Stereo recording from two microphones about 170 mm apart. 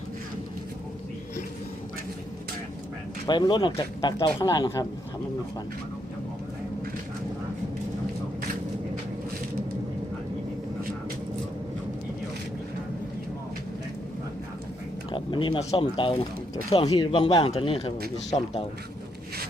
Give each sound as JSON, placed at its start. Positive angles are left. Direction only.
{"t": 3.2, "sound": "speech", "side_deg": 25}
{"t": 15.1, "sound": "speech", "side_deg": 30}